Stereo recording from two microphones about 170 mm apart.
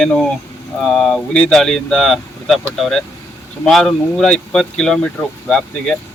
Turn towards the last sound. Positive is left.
turn(degrees=5)  # may be behind; listen again after turning